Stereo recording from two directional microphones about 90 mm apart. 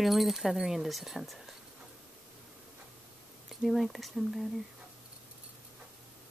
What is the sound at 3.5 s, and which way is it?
Speech, centre (ahead or behind).